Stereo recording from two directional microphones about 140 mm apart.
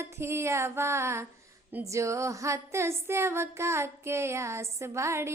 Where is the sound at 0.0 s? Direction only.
20° right (ahead or behind).